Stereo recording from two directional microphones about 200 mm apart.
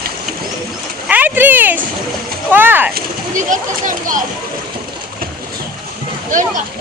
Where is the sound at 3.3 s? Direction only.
40° right (ahead or behind).